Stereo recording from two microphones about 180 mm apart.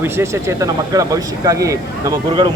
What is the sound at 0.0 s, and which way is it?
Speech, 15° right (ahead or behind).